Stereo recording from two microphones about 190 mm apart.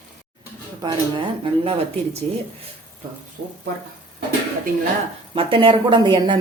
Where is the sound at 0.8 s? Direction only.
25° right (ahead or behind).